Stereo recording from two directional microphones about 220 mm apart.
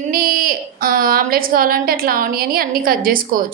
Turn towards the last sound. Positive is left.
turn(degrees=-40)  # may be behind; listen again after turning